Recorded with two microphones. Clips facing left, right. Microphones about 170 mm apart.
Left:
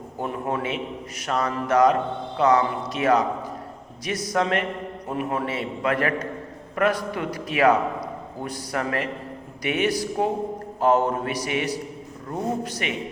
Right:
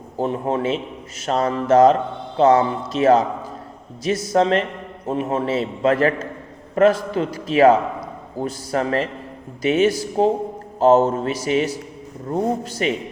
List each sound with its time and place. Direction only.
0.2 s a man's voice: 25° right (ahead or behind)